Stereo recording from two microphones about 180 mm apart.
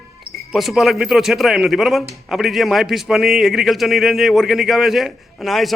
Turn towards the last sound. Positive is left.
turn(degrees=0)  # may be behind; listen again after turning